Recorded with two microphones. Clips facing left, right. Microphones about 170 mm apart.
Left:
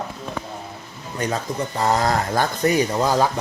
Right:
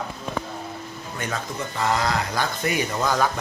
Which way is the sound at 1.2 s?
35° left (ahead or behind).